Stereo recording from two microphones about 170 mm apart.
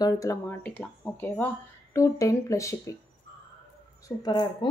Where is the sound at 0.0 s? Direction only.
20° left (ahead or behind).